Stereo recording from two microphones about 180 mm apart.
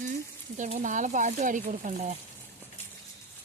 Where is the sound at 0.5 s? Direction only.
40° right (ahead or behind).